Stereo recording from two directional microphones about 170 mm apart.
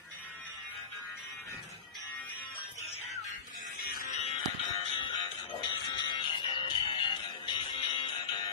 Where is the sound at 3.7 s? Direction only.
60° left (ahead or behind).